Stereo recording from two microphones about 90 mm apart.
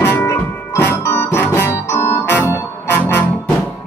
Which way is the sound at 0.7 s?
25° left (ahead or behind).